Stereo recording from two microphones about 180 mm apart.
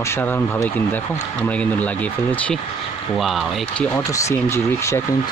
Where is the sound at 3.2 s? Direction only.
Centre (ahead or behind).